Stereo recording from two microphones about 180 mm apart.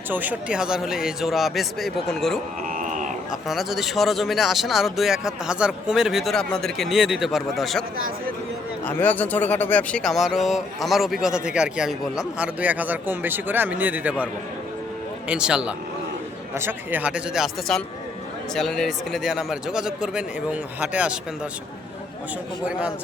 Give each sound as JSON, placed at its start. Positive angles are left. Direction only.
{"t": 0.1, "sound": "speech", "side_deg": -10}
{"t": 2.6, "sound": "a sound", "side_deg": -45}
{"t": 3.4, "sound": "speech", "side_deg": 0}
{"t": 8.9, "sound": "speech", "side_deg": 10}
{"t": 15.3, "sound": "speech", "side_deg": -5}